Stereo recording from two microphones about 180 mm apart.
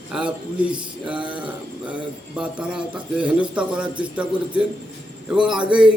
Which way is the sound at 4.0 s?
5° right (ahead or behind).